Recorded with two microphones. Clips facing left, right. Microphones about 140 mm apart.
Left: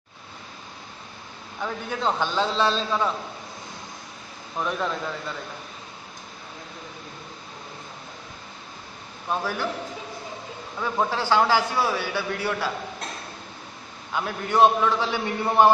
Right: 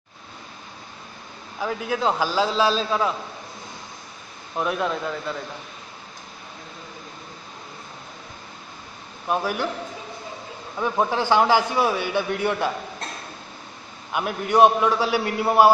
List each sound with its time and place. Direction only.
1.6 s a man's voice: 5° right (ahead or behind)
4.6 s a man's voice: 5° right (ahead or behind)
9.3 s a man's voice: 15° right (ahead or behind)
10.8 s a man's voice: 15° right (ahead or behind)
14.1 s a man's voice: 15° right (ahead or behind)